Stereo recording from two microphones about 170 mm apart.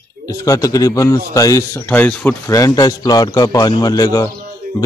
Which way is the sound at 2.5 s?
20° left (ahead or behind).